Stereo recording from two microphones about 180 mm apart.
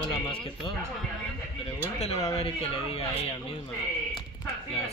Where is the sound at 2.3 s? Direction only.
35° left (ahead or behind).